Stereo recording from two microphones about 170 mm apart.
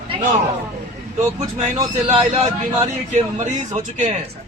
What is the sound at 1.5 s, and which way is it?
A man's voice, 40° right (ahead or behind).